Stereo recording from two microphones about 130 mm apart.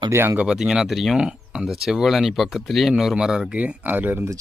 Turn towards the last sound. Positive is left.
turn(degrees=-15)  # may be behind; listen again after turning